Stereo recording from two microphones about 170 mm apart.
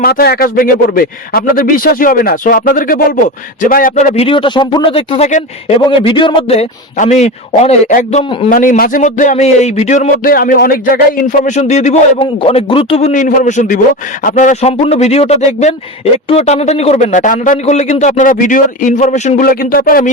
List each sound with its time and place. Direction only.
0.0 s speech: 65° left (ahead or behind)
3.9 s speech: 40° left (ahead or behind)
6.9 s a man's voice: 45° left (ahead or behind)
10.2 s speech: 60° left (ahead or behind)
11.2 s a man's voice: 45° left (ahead or behind)
19.5 s speech: 60° left (ahead or behind)